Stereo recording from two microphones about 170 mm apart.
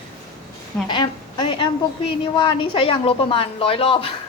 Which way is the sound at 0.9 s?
25° left (ahead or behind).